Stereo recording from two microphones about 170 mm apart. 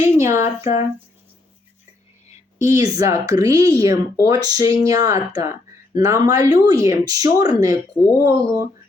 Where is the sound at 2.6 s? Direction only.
20° right (ahead or behind).